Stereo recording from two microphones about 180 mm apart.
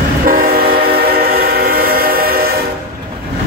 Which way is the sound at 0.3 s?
55° right (ahead or behind).